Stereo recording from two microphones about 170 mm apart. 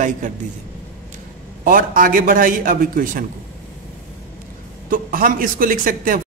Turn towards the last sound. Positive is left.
turn(degrees=-55)  # may be behind; listen again after turning